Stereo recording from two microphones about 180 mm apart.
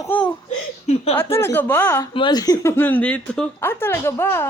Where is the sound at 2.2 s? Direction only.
25° left (ahead or behind).